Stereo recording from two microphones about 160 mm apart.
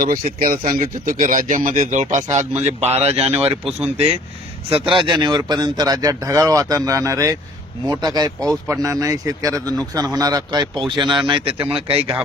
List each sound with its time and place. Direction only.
0.0 s speech: 65° right (ahead or behind); by 3.6 s 40° right (ahead or behind)
3.6 s speech: centre (ahead or behind)
3.9 s speech: 40° right (ahead or behind)